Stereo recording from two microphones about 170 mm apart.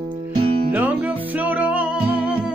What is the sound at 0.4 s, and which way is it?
Music, 35° right (ahead or behind).